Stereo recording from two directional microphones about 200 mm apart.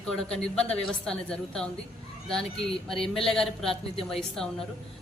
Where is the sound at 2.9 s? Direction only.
25° left (ahead or behind).